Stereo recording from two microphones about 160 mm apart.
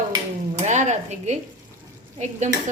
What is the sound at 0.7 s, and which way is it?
Speech, 45° right (ahead or behind).